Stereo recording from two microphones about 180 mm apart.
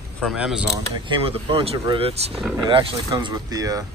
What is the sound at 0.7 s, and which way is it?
Speech, 30° right (ahead or behind).